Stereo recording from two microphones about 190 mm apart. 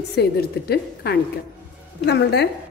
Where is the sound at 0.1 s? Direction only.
60° left (ahead or behind).